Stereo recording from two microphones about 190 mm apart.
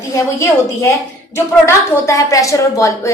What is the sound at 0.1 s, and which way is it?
A woman's voice, 15° left (ahead or behind).